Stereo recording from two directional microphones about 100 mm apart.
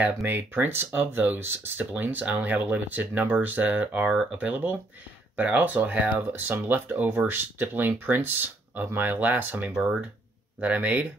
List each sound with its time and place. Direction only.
0.2 s speech: 20° right (ahead or behind)
4.1 s speech: 5° right (ahead or behind)
4.4 s speech: 20° right (ahead or behind)
9.7 s speech: 5° right (ahead or behind)